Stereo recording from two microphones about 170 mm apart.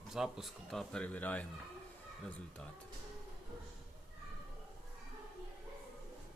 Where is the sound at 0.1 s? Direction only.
Centre (ahead or behind).